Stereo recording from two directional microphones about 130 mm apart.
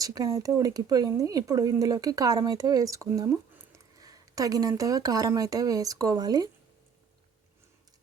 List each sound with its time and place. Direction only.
0.0 s speech: 30° right (ahead or behind)
3.9 s a sound: 25° right (ahead or behind)
4.7 s speech: 25° right (ahead or behind)